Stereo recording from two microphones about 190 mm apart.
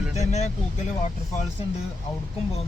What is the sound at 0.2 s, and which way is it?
Speech, 35° left (ahead or behind).